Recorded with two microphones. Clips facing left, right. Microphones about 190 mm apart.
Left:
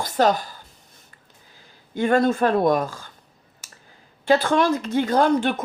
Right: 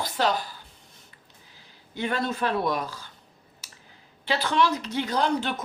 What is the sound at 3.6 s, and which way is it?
Clicking, 50° left (ahead or behind).